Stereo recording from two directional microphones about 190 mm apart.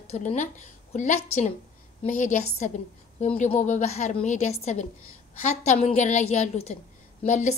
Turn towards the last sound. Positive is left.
turn(degrees=40)  # may be behind; listen again after turning